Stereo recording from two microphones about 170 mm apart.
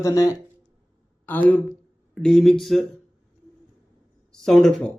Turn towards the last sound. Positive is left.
turn(degrees=5)  # may be behind; listen again after turning